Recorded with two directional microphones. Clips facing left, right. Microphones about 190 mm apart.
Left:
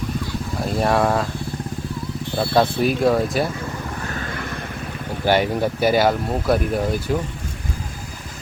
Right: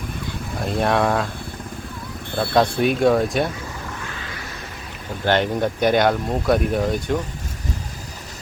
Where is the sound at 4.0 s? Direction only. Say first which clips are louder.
Left 5 dB; 45° left (ahead or behind).